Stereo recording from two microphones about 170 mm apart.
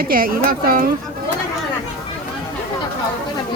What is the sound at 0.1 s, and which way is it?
Speech, 60° right (ahead or behind).